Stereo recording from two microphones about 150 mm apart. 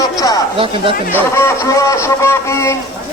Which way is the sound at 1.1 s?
15° left (ahead or behind).